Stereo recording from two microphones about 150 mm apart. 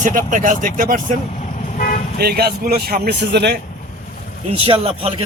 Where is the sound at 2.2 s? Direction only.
90° right.